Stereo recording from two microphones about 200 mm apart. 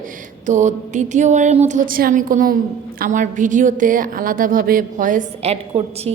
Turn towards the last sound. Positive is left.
turn(degrees=-30)  # may be behind; listen again after turning